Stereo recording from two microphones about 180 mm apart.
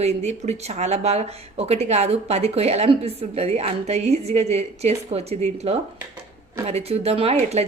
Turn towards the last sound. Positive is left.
turn(degrees=-35)  # may be behind; listen again after turning